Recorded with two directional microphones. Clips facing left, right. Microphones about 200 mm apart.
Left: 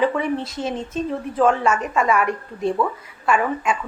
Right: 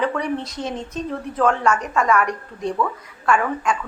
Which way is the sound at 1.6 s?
25° left (ahead or behind).